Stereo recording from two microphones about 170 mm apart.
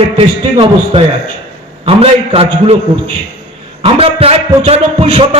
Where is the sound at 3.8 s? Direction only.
35° right (ahead or behind).